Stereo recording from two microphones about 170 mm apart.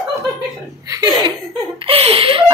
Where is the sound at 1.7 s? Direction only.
35° right (ahead or behind).